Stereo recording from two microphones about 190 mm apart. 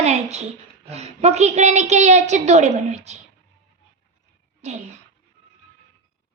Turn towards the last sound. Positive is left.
turn(degrees=-40)  # may be behind; listen again after turning